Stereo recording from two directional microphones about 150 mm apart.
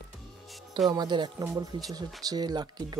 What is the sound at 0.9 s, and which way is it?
Speech, 30° right (ahead or behind).